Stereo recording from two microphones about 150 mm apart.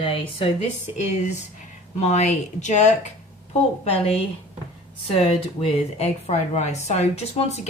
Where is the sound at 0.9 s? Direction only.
50° left (ahead or behind).